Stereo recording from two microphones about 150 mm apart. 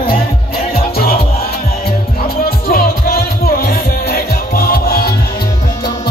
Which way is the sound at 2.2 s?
85° left.